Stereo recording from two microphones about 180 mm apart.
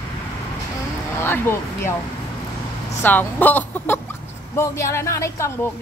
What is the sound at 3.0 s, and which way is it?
A woman's voice, 10° left (ahead or behind).